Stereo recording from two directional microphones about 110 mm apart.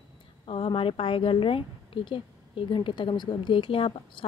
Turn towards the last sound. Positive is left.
turn(degrees=50)  # may be behind; listen again after turning